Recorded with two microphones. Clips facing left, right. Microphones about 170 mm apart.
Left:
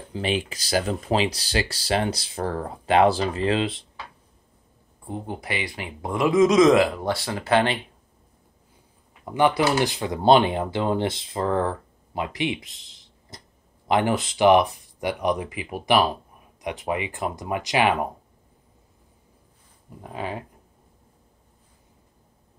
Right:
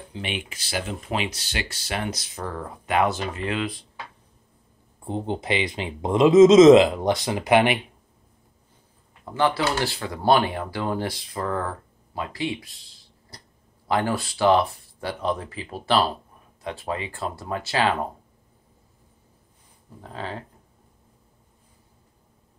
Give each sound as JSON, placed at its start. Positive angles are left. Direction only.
{"t": 0.1, "sound": "speech", "side_deg": 35}
{"t": 5.0, "sound": "speech", "side_deg": -25}
{"t": 9.2, "sound": "speech", "side_deg": 15}
{"t": 20.0, "sound": "speech", "side_deg": 15}